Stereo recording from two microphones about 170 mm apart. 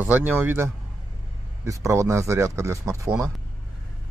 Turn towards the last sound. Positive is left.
turn(degrees=-20)  # may be behind; listen again after turning